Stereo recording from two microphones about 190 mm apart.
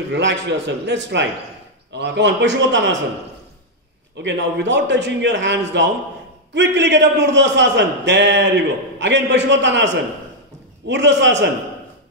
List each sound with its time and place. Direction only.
0.1 s a man's voice: 70° right (ahead or behind)
4.2 s a man's voice: 65° right (ahead or behind)
10.9 s a man's voice: 65° right (ahead or behind)